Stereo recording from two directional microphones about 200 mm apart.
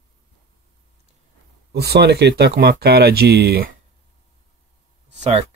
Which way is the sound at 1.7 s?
55° right (ahead or behind).